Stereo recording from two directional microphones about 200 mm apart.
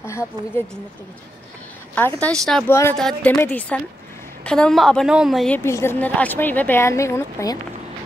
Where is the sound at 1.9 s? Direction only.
5° left (ahead or behind).